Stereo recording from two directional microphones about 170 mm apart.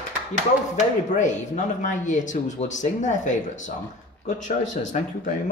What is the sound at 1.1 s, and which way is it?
Speech, 45° left (ahead or behind).